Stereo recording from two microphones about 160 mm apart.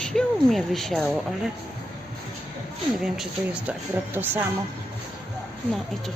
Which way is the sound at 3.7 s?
10° right (ahead or behind).